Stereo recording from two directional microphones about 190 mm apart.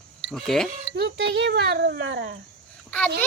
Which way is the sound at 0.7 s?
65° right (ahead or behind).